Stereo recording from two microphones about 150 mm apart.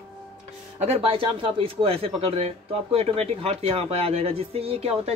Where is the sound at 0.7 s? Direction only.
45° right (ahead or behind).